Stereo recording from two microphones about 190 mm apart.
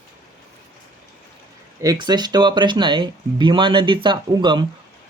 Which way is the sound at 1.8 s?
20° right (ahead or behind).